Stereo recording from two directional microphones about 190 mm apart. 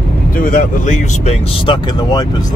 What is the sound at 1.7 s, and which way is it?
Speech, 25° left (ahead or behind).